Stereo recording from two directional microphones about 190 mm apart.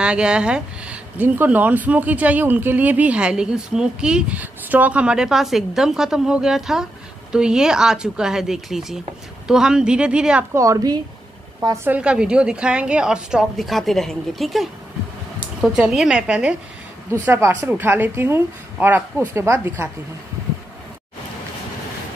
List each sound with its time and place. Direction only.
0.0 s speech: 5° right (ahead or behind)
10.6 s a woman's voice: 20° right (ahead or behind)